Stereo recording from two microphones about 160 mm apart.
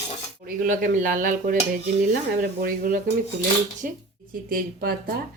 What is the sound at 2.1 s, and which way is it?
Speech, 70° right (ahead or behind).